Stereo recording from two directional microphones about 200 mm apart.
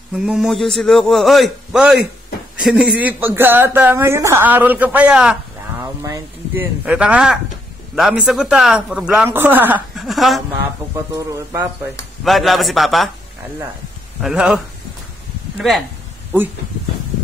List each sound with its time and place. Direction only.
0.1 s a man's voice: centre (ahead or behind)
11.1 s speech: 15° right (ahead or behind)
12.3 s a man's voice: centre (ahead or behind)
14.2 s a man's voice: 5° right (ahead or behind)